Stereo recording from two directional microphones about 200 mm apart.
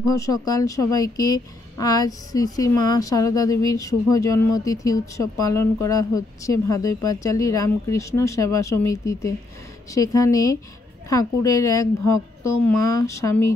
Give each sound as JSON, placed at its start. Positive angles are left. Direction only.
{"t": 0.1, "sound": "a woman's voice", "side_deg": 15}